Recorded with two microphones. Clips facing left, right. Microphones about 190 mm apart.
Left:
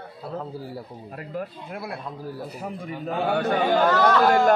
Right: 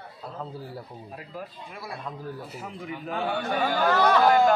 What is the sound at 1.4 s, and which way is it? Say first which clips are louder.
Speech: left 6 dB; 60° left (ahead or behind).